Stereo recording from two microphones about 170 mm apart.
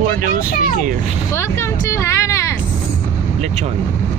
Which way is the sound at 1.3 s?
15° left (ahead or behind).